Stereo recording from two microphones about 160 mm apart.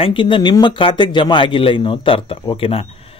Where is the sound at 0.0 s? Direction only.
30° left (ahead or behind).